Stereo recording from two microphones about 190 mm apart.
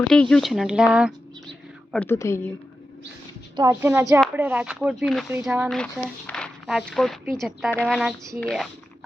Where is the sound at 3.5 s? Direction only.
15° right (ahead or behind).